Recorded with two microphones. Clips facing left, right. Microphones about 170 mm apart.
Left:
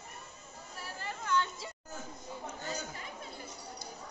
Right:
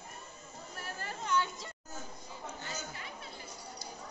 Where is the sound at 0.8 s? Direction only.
50° right (ahead or behind).